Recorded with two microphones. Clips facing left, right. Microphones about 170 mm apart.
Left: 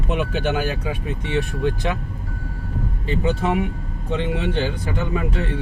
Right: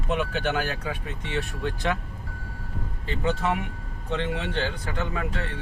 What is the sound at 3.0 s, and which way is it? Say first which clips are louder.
Speech: left 4 dB; 15° left (ahead or behind).